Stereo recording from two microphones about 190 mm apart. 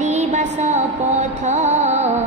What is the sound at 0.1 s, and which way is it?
Music, 40° right (ahead or behind).